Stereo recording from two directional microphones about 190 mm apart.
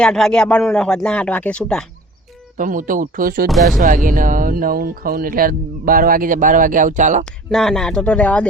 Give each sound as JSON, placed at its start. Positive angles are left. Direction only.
{"t": 0.0, "sound": "a man's voice", "side_deg": 5}
{"t": 2.6, "sound": "speech", "side_deg": -45}
{"t": 3.5, "sound": "a man's voice", "side_deg": 0}
{"t": 3.8, "sound": "speech", "side_deg": -45}
{"t": 7.5, "sound": "a man's voice", "side_deg": 0}